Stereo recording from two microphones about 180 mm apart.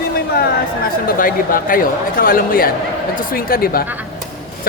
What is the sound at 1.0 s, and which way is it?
A woman's voice, 50° left (ahead or behind).